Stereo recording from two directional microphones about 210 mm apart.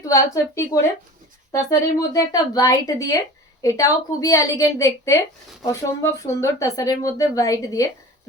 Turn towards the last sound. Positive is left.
turn(degrees=15)  # may be behind; listen again after turning